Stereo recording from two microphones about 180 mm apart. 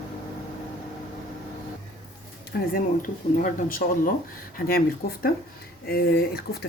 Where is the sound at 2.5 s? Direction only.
50° left (ahead or behind).